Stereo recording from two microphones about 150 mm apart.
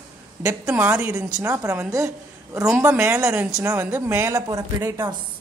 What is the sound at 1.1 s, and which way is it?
A woman's voice, 20° right (ahead or behind).